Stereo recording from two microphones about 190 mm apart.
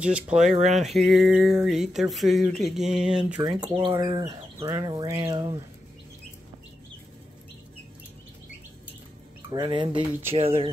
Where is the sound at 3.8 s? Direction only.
25° right (ahead or behind).